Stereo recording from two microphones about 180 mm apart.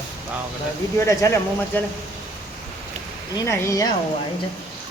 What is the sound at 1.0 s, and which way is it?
Speech, 15° left (ahead or behind).